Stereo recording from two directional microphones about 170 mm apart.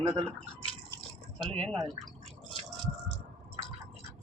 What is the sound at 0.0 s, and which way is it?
Speech, 25° right (ahead or behind).